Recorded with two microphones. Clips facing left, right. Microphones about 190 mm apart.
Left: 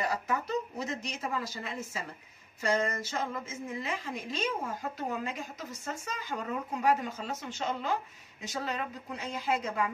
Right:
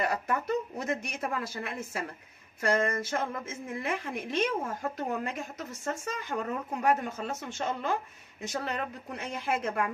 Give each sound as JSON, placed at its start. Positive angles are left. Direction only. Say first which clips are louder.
{"t": 0.0, "sound": "a woman's voice", "louder": "right 2 dB", "side_deg": -55}